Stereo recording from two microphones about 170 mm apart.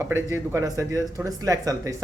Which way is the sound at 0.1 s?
15° right (ahead or behind).